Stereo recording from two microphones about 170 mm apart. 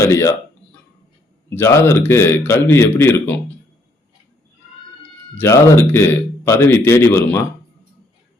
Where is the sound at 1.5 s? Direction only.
15° left (ahead or behind).